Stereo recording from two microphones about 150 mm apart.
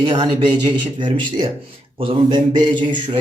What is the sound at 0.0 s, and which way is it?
A man's voice, 30° right (ahead or behind).